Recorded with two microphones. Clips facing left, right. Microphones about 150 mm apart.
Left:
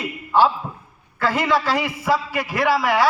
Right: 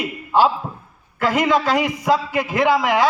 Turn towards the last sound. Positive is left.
turn(degrees=-20)  # may be behind; listen again after turning